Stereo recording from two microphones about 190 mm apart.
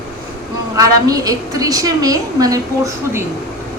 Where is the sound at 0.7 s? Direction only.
20° right (ahead or behind).